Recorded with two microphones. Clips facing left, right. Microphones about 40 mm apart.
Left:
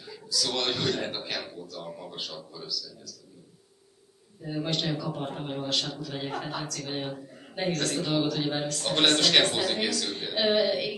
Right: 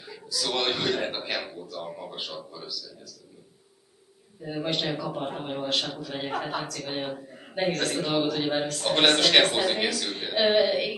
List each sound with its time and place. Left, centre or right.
0.0 s a man's voice: centre
4.4 s a man's voice: right